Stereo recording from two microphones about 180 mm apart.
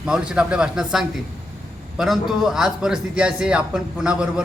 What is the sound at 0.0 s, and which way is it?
A man's voice, 5° right (ahead or behind).